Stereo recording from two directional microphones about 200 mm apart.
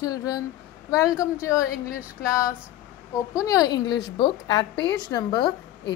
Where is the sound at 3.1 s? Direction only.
15° left (ahead or behind).